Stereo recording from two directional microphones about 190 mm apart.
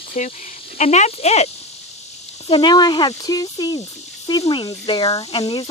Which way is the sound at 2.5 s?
25° left (ahead or behind).